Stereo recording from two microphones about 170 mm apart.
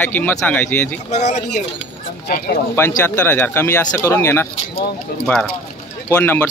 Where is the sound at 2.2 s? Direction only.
55° left (ahead or behind).